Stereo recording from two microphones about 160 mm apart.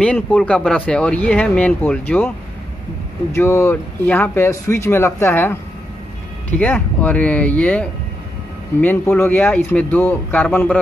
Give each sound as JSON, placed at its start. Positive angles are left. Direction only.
{"t": 0.0, "sound": "speech", "side_deg": 5}
{"t": 3.3, "sound": "speech", "side_deg": 15}